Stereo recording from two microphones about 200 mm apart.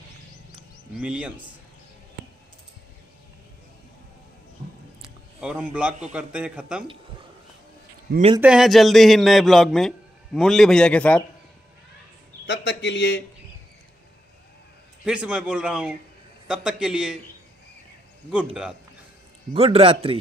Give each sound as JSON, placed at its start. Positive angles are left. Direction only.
{"t": 0.9, "sound": "a man's voice", "side_deg": -5}
{"t": 5.4, "sound": "a man's voice", "side_deg": -5}
{"t": 8.4, "sound": "a man's voice", "side_deg": -5}
{"t": 12.4, "sound": "a man's voice", "side_deg": 60}
{"t": 15.0, "sound": "a man's voice", "side_deg": -5}
{"t": 18.3, "sound": "a man's voice", "side_deg": -5}
{"t": 19.5, "sound": "a man's voice", "side_deg": -30}